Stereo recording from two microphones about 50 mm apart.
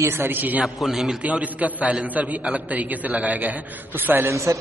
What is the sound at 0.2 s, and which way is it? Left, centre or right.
Speech, right.